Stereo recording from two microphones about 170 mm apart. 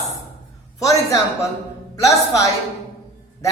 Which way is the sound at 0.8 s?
20° left (ahead or behind).